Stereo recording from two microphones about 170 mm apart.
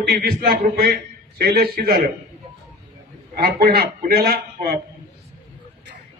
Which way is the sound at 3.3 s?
65° right (ahead or behind).